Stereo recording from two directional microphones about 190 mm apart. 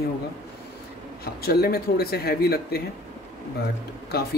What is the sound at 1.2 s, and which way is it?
Speech, 55° left (ahead or behind).